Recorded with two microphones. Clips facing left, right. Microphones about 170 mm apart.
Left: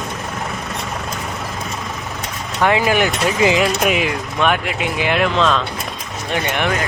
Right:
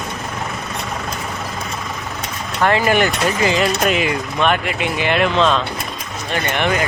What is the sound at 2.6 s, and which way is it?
Speech, 5° left (ahead or behind).